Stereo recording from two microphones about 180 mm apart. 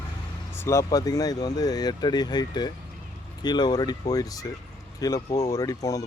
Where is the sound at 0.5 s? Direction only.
15° left (ahead or behind).